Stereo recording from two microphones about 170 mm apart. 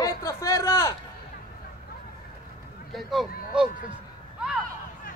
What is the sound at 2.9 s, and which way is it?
Speech, centre (ahead or behind).